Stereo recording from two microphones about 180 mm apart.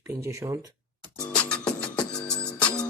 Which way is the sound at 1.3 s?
5° left (ahead or behind).